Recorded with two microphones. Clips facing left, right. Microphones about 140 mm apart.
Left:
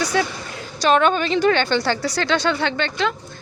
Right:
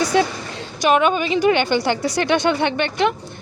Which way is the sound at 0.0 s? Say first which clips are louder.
Right 4 dB; 25° right (ahead or behind).